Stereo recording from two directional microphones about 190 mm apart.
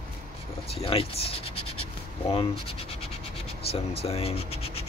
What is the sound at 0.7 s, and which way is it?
Speech, 30° left (ahead or behind).